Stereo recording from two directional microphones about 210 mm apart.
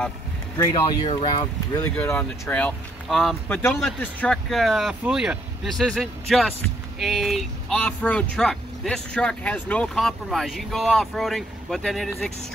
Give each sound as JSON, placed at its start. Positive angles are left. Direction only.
{"t": 0.6, "sound": "speech", "side_deg": 15}
{"t": 1.0, "sound": "speech", "side_deg": 25}